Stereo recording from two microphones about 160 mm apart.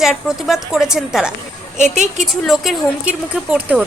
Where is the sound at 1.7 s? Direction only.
50° right (ahead or behind).